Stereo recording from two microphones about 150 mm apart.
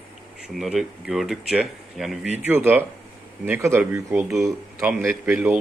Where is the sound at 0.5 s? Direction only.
5° right (ahead or behind).